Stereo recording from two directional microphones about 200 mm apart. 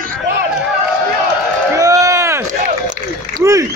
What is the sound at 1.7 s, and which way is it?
Run, 15° right (ahead or behind).